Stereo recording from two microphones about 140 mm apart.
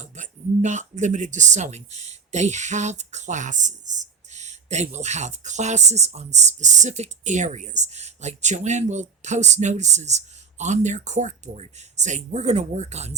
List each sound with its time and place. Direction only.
0.0 s speech: 60° right (ahead or behind)